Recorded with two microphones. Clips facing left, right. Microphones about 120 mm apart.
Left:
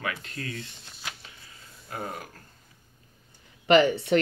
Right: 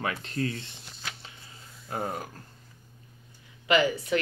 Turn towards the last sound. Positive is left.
turn(degrees=30)  # may be behind; listen again after turning